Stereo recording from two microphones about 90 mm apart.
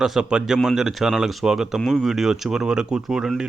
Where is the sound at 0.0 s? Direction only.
5° right (ahead or behind).